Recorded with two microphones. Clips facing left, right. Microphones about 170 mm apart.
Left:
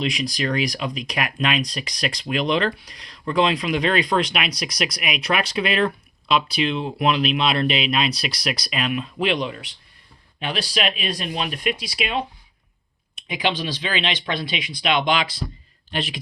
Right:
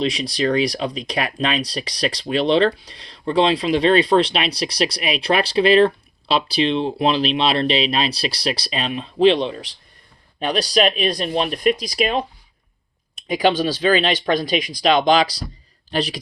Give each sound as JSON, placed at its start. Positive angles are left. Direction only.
{"t": 0.0, "sound": "speech", "side_deg": -35}